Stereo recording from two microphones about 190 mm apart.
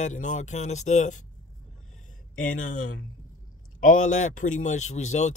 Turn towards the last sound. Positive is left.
turn(degrees=40)  # may be behind; listen again after turning